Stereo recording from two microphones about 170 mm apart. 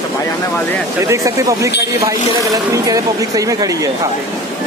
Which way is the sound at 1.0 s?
20° right (ahead or behind).